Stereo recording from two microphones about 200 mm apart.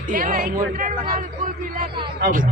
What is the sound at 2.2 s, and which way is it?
Speech, 40° right (ahead or behind).